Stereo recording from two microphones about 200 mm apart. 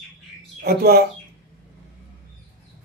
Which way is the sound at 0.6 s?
50° right (ahead or behind).